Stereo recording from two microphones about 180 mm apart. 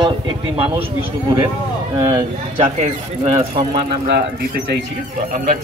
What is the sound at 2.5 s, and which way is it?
Speech, 40° right (ahead or behind).